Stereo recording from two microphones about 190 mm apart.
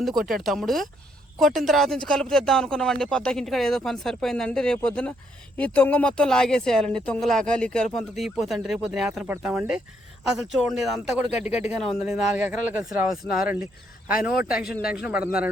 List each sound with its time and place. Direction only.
0.2 s speech: centre (ahead or behind)
11.9 s speech: 10° right (ahead or behind)
13.2 s speech: 30° right (ahead or behind)
14.3 s speech: 5° right (ahead or behind)
14.7 s speech: 50° left (ahead or behind)
14.9 s speech: 5° right (ahead or behind)